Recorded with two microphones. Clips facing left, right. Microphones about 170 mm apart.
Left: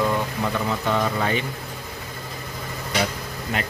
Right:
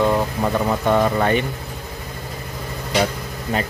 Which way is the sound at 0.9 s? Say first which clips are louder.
Right 6 dB; 55° right (ahead or behind).